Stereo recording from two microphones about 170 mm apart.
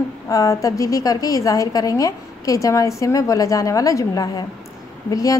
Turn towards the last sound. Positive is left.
turn(degrees=20)  # may be behind; listen again after turning